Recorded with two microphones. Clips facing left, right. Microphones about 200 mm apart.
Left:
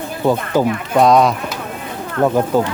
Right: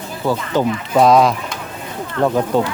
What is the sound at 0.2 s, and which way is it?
Speech, 20° left (ahead or behind).